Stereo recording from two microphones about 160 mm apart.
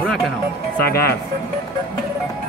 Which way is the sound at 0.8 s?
75° left (ahead or behind).